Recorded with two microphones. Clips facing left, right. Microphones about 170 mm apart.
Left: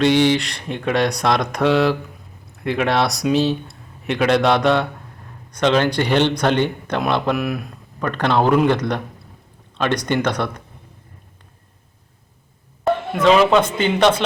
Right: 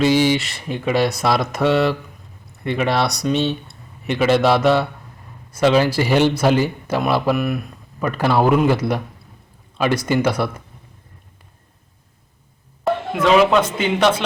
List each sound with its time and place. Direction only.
0.0 s speech: 5° right (ahead or behind)
12.9 s a sound: centre (ahead or behind)
13.6 s speech: 5° right (ahead or behind)